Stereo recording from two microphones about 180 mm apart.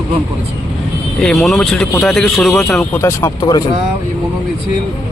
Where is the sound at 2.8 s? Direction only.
15° left (ahead or behind).